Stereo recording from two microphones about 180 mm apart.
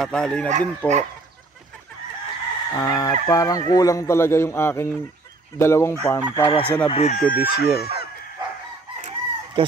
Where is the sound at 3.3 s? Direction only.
20° left (ahead or behind).